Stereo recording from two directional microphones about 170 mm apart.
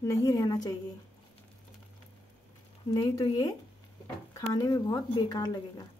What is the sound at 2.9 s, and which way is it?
Speech, 25° left (ahead or behind).